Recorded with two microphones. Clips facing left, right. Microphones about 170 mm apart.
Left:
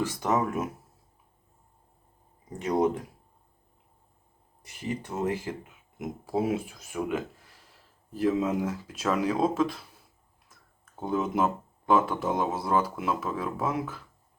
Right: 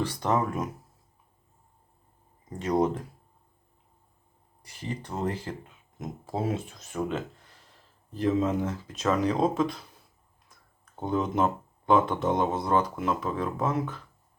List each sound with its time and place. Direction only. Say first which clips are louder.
0.1 s speech: even; 10° left (ahead or behind)
2.6 s speech: even; 10° left (ahead or behind)
4.8 s speech: left 1 dB; 10° left (ahead or behind)
11.0 s speech: right 1 dB; 5° left (ahead or behind)